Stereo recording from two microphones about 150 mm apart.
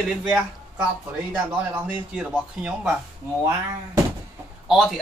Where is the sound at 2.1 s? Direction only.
5° right (ahead or behind).